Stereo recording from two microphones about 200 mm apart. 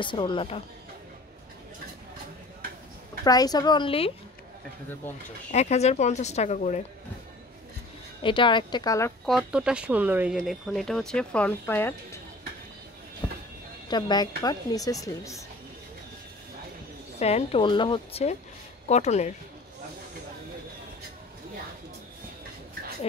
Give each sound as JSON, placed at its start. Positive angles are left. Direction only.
{"t": 0.0, "sound": "speech", "side_deg": 25}
{"t": 3.3, "sound": "speech", "side_deg": 20}
{"t": 5.5, "sound": "speech", "side_deg": 35}
{"t": 8.2, "sound": "speech", "side_deg": 25}
{"t": 9.2, "sound": "speech", "side_deg": 0}
{"t": 13.2, "sound": "music", "side_deg": 25}
{"t": 13.8, "sound": "speech", "side_deg": 20}
{"t": 17.2, "sound": "speech", "side_deg": 30}